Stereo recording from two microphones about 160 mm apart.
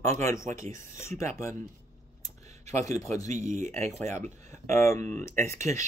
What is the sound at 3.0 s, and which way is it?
Speech, 20° left (ahead or behind).